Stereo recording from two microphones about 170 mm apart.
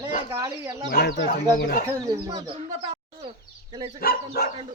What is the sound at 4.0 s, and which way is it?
Speech, 65° left (ahead or behind).